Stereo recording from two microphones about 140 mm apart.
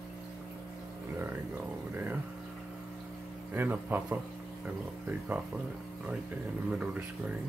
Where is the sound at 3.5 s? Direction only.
15° right (ahead or behind).